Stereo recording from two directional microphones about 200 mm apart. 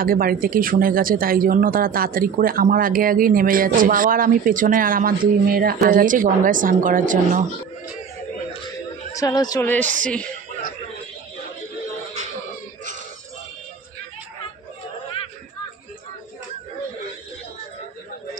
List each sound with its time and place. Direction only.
0.0 s speech: 45° right (ahead or behind)
8.6 s a sound: 20° left (ahead or behind)
9.8 s speech: 40° right (ahead or behind)